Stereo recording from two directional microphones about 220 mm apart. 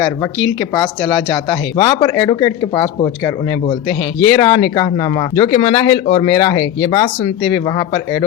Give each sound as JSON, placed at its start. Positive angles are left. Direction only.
{"t": 0.7, "sound": "speech", "side_deg": 15}